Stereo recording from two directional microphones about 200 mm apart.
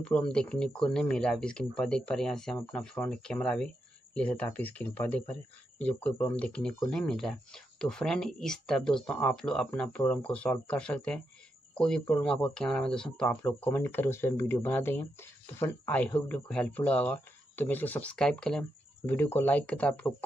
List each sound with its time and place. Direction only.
0.0 s speech: 5° left (ahead or behind)